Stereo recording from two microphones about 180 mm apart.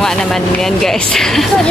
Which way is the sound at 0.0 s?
Centre (ahead or behind).